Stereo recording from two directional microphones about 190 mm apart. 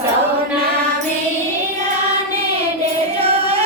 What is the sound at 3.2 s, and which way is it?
Music, 30° right (ahead or behind).